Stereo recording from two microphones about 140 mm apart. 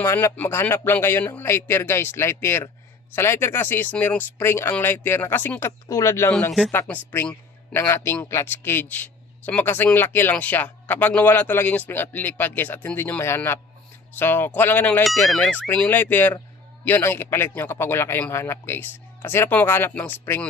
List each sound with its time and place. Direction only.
0.0 s a man's voice: 15° left (ahead or behind)